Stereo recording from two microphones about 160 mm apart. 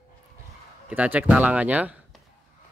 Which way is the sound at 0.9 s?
10° right (ahead or behind).